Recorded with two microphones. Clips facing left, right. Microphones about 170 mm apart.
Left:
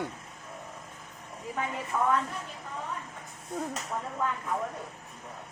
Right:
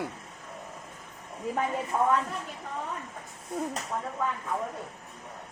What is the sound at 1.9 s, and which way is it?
Speech, 35° right (ahead or behind).